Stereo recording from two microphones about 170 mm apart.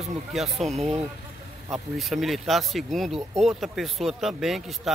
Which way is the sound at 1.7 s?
Centre (ahead or behind).